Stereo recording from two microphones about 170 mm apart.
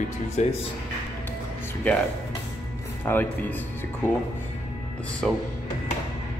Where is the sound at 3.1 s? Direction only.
10° left (ahead or behind).